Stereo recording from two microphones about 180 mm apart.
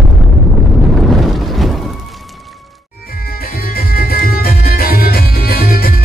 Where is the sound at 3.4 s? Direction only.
55° left (ahead or behind).